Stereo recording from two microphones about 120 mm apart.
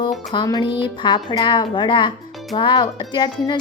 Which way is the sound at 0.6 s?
45° left (ahead or behind).